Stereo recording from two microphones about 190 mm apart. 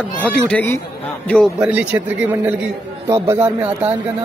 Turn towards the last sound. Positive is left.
turn(degrees=-10)  # may be behind; listen again after turning